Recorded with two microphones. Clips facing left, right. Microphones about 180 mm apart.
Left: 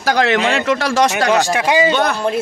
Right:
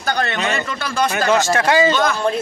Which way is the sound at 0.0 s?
90° left.